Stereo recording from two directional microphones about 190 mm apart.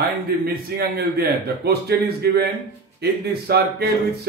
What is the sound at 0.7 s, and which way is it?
A man's voice, 55° right (ahead or behind).